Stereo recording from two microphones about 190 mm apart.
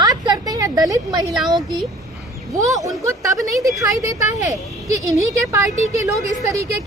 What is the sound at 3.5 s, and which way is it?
Speech, centre (ahead or behind).